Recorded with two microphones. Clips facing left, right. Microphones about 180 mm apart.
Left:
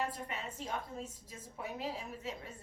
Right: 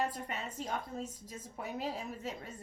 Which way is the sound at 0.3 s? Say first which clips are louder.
Right 2 dB; 40° right (ahead or behind).